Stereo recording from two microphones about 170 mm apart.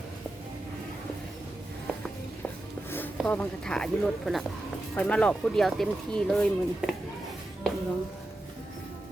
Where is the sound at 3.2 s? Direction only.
10° left (ahead or behind).